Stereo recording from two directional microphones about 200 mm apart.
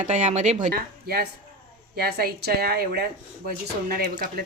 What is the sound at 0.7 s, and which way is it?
Speech, 50° right (ahead or behind).